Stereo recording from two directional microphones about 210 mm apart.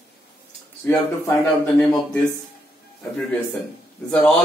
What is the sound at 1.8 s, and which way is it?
Speech, 10° left (ahead or behind).